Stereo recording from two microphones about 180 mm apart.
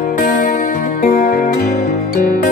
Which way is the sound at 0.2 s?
50° left (ahead or behind).